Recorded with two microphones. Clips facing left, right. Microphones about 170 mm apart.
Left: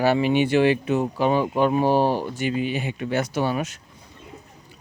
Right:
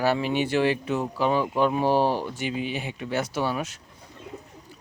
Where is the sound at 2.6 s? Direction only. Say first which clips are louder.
Left 5 dB; 50° left (ahead or behind).